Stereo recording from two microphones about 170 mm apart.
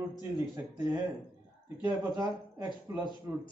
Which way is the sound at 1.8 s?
20° right (ahead or behind).